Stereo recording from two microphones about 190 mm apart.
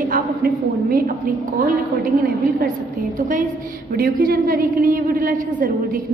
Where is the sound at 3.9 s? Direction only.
50° right (ahead or behind).